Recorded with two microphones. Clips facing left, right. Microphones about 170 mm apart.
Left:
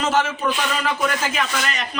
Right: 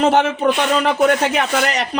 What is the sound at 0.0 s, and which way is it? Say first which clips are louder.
Speech: right 6 dB; 60° right (ahead or behind).